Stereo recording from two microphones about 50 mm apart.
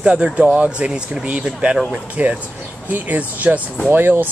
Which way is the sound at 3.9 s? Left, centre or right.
Right.